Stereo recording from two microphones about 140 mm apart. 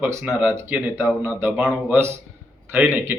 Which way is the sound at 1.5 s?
Centre (ahead or behind).